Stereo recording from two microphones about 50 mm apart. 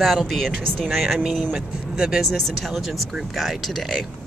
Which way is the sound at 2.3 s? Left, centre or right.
Centre.